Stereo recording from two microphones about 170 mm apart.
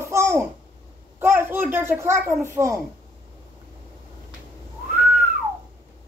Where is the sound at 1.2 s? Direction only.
15° right (ahead or behind).